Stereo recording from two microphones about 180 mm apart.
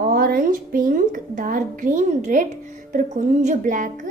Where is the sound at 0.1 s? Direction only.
55° right (ahead or behind).